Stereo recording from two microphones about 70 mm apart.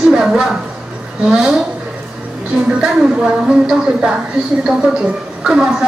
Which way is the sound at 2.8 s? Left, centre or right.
Centre.